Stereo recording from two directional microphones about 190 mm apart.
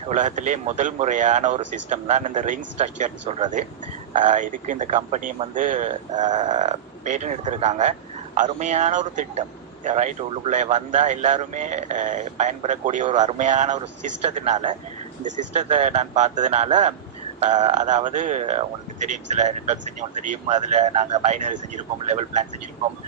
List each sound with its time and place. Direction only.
0.1 s speech: 40° right (ahead or behind)